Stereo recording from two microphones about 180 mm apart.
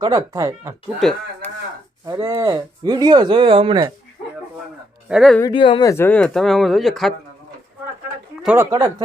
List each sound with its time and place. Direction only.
0.0 s speech: 20° right (ahead or behind)
0.9 s speech: centre (ahead or behind)
2.0 s speech: 20° right (ahead or behind)
5.0 s speech: centre (ahead or behind)
5.4 s speech: 25° left (ahead or behind)
5.9 s speech: 10° left (ahead or behind)
8.5 s speech: 20° right (ahead or behind)